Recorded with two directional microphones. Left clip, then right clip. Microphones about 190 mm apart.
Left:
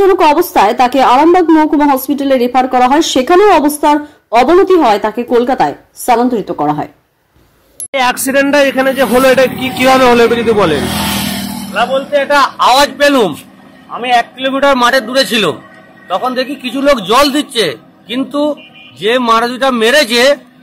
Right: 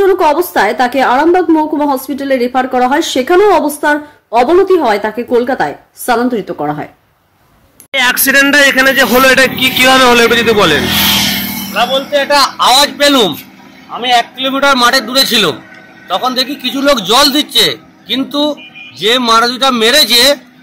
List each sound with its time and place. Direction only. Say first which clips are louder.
0.0 s speech: left 1 dB; 10° left (ahead or behind)
6.1 s speech: left 1 dB; 5° left (ahead or behind)
7.9 s speech: right 2 dB; 5° left (ahead or behind)
10.8 s speech: right 5 dB; 35° left (ahead or behind)
11.1 s music: right 6 dB; 55° left (ahead or behind)
11.7 s speech: even; 5° right (ahead or behind)